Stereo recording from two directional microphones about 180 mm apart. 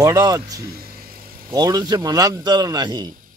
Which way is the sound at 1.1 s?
55° right (ahead or behind).